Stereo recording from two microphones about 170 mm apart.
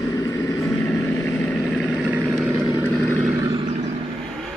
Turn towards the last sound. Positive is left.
turn(degrees=10)  # may be behind; listen again after turning